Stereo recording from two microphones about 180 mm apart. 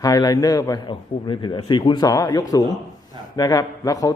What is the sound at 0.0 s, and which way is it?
Speech, 20° left (ahead or behind).